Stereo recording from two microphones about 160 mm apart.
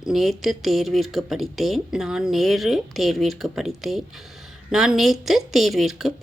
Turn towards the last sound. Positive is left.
turn(degrees=0)  # may be behind; listen again after turning